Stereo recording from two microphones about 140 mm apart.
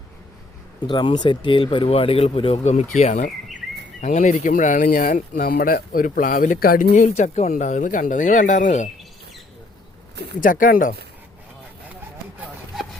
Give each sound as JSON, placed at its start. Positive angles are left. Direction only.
{"t": 0.9, "sound": "speech", "side_deg": 30}
{"t": 7.2, "sound": "speech", "side_deg": 50}
{"t": 7.5, "sound": "speech", "side_deg": 65}
{"t": 10.4, "sound": "speech", "side_deg": 75}